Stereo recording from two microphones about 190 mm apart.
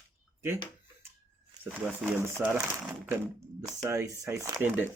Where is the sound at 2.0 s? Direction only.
10° right (ahead or behind).